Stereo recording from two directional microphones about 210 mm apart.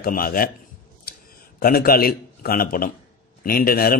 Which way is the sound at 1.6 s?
45° left (ahead or behind).